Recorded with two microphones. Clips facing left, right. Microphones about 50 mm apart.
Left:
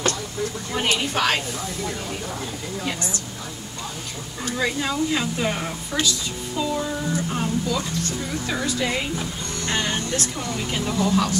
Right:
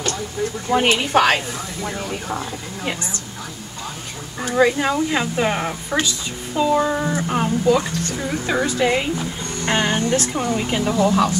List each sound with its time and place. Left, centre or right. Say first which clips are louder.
0.8 s speech: right 5 dB; right
4.4 s speech: right 8 dB; right
6.8 s speech: right 6 dB; right
7.2 s speech: right 4 dB; right